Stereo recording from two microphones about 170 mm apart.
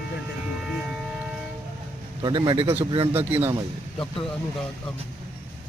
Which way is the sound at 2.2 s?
25° right (ahead or behind).